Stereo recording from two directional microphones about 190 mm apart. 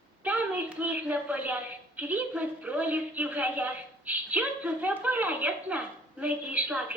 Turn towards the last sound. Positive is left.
turn(degrees=-5)  # may be behind; listen again after turning